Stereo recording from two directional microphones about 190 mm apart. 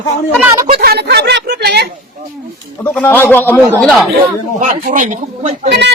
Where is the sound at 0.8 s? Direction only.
55° right (ahead or behind).